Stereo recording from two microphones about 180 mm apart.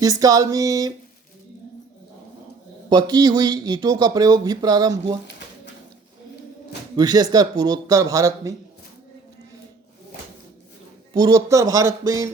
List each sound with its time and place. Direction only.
0.0 s speech: 20° right (ahead or behind)
2.9 s speech: 20° right (ahead or behind)
6.9 s speech: 20° right (ahead or behind)
11.1 s a man's voice: 20° right (ahead or behind)